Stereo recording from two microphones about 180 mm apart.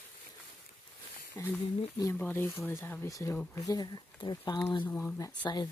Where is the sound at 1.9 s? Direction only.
15° left (ahead or behind).